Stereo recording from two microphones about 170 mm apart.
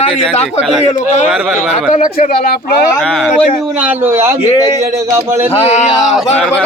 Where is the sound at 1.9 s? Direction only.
45° left (ahead or behind).